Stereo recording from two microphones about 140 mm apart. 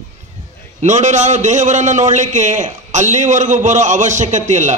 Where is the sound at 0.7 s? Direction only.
55° right (ahead or behind).